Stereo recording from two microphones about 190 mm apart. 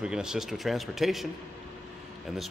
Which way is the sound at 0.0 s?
5° right (ahead or behind).